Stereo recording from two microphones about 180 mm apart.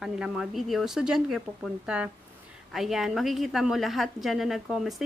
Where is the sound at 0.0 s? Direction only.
5° right (ahead or behind).